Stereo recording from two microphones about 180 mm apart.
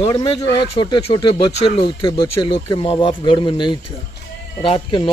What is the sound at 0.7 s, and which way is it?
Speech, 25° left (ahead or behind).